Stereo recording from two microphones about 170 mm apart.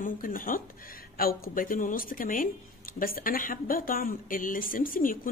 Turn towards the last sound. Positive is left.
turn(degrees=55)  # may be behind; listen again after turning